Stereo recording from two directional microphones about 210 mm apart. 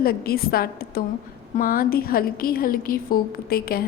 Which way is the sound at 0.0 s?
45° left (ahead or behind).